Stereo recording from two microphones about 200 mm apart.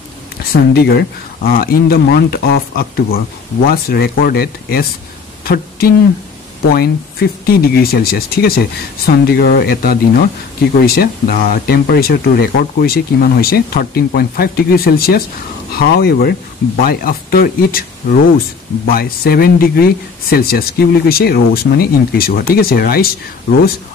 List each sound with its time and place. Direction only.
0.5 s speech: 50° left (ahead or behind)
5.4 s a sound: 50° left (ahead or behind)
6.7 s speech: 50° left (ahead or behind)